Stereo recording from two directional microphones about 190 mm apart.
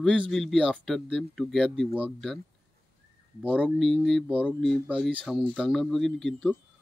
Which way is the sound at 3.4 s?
5° right (ahead or behind).